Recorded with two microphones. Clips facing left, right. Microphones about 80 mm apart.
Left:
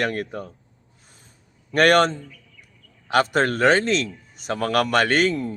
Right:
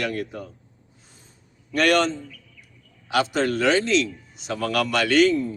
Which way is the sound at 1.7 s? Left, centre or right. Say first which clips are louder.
Left 3 dB; left.